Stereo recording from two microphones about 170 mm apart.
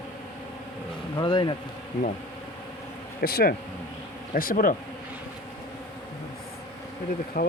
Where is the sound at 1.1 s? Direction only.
30° left (ahead or behind).